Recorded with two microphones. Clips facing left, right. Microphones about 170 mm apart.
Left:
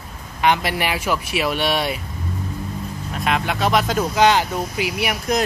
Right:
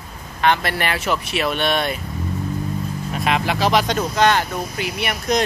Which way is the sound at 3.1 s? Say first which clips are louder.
Right 1 dB; centre (ahead or behind).